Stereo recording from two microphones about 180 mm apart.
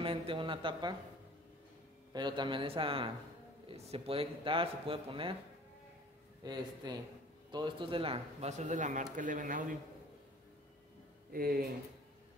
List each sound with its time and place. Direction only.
0.0 s speech: 30° right (ahead or behind)
2.1 s a man's voice: 25° right (ahead or behind)
6.4 s a man's voice: 25° right (ahead or behind); by 9.8 s 50° right (ahead or behind)
11.3 s speech: 55° right (ahead or behind)